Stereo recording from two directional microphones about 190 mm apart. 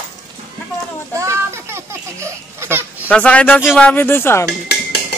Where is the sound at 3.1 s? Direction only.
5° left (ahead or behind).